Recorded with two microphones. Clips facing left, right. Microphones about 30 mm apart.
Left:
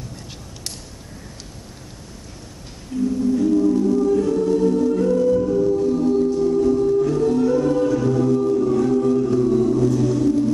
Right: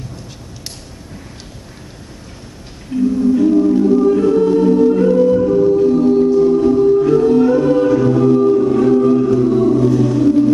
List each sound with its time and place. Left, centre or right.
3.2 s music: right